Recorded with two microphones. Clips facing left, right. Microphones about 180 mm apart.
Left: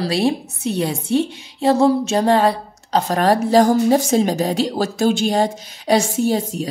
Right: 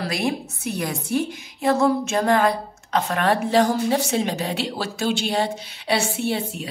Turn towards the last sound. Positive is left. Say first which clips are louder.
# left 6 dB
turn(degrees=40)  # may be behind; listen again after turning